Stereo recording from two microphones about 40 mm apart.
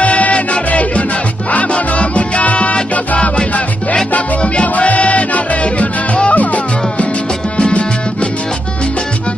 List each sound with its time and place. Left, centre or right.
0.0 s music: left
4.4 s music: left